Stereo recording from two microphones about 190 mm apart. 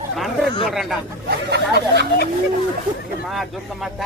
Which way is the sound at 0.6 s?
Centre (ahead or behind).